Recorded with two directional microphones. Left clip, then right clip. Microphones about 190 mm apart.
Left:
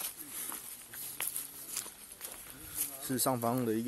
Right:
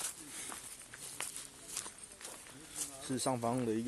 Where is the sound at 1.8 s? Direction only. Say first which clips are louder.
Left 2 dB; 10° left (ahead or behind).